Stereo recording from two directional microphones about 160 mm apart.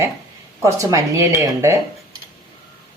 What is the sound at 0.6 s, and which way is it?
Speech, 20° right (ahead or behind).